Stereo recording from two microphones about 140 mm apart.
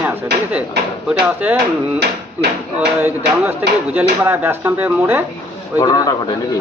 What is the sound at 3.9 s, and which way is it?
Speech, 15° right (ahead or behind).